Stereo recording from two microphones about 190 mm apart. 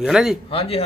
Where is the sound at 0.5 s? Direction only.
30° left (ahead or behind).